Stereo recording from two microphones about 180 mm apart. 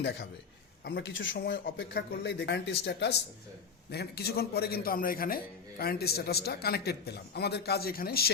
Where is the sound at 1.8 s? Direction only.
65° left (ahead or behind).